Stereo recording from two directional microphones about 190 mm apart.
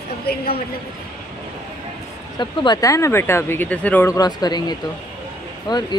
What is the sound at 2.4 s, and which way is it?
Speech, 25° left (ahead or behind).